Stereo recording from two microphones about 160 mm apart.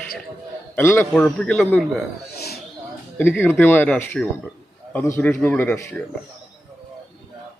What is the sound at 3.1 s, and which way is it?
Speech, 10° left (ahead or behind).